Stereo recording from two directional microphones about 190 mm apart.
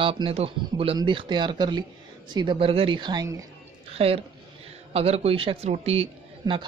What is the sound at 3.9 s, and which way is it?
A woman's voice, 30° right (ahead or behind).